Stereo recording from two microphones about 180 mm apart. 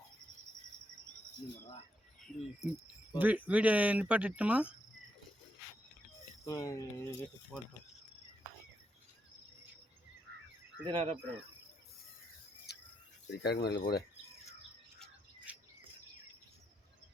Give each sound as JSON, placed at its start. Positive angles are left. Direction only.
{"t": 2.2, "sound": "speech", "side_deg": 0}
{"t": 6.4, "sound": "speech", "side_deg": 20}
{"t": 10.8, "sound": "speech", "side_deg": -30}
{"t": 12.7, "sound": "cricket", "side_deg": 65}
{"t": 13.4, "sound": "speech", "side_deg": 65}
{"t": 15.5, "sound": "bird", "side_deg": -10}